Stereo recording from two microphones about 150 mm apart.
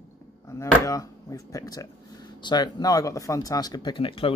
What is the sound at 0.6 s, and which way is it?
Speech, 20° left (ahead or behind).